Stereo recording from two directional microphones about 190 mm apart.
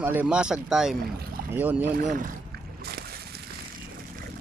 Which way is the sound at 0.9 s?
50° right (ahead or behind).